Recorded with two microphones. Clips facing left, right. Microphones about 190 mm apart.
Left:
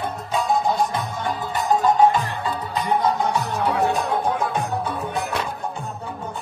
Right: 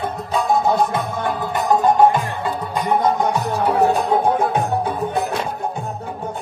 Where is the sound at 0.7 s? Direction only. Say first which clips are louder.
Right 4 dB; 55° right (ahead or behind).